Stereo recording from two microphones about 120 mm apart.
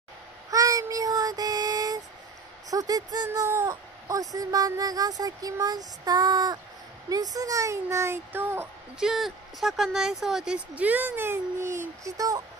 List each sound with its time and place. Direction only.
0.5 s child singing: 30° right (ahead or behind)
2.7 s speech: 30° right (ahead or behind)
9.0 s speech: centre (ahead or behind); by 12.4 s 30° right (ahead or behind)